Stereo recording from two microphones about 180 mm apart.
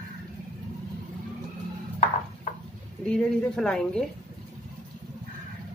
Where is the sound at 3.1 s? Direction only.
5° left (ahead or behind).